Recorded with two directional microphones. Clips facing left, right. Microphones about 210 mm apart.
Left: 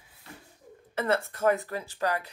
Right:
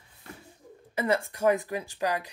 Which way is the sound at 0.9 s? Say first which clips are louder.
Right 1 dB; 15° right (ahead or behind).